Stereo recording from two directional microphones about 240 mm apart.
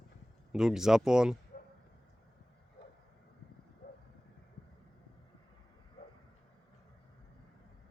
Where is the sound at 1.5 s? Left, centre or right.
Left.